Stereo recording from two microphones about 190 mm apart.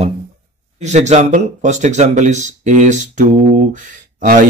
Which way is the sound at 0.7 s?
35° right (ahead or behind).